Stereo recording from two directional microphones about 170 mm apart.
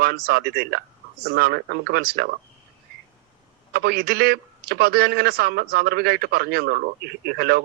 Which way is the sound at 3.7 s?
65° right (ahead or behind).